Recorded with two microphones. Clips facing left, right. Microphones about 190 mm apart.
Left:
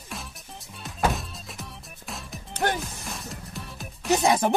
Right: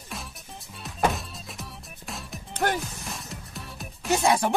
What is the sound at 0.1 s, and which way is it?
Music, centre (ahead or behind).